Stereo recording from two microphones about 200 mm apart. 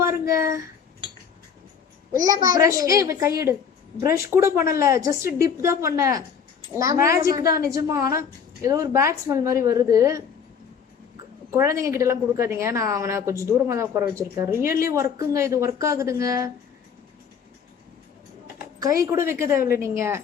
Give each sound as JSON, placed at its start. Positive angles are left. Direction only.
{"t": 0.0, "sound": "a sound", "side_deg": -15}
{"t": 2.2, "sound": "a woman's voice", "side_deg": -15}
{"t": 11.5, "sound": "a woman's voice", "side_deg": -15}
{"t": 19.0, "sound": "a woman's voice", "side_deg": -15}